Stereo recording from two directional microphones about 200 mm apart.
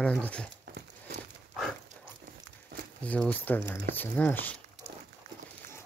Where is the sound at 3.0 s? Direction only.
5° left (ahead or behind).